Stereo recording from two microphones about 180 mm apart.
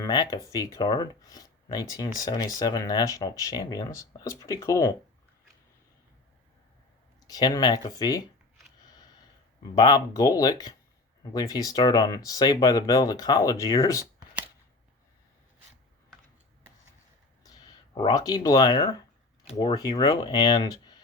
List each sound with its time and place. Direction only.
0.0 s speech: 20° left (ahead or behind)
7.3 s speech: 20° left (ahead or behind)
9.7 s speech: 25° left (ahead or behind)
17.4 s speech: 20° left (ahead or behind)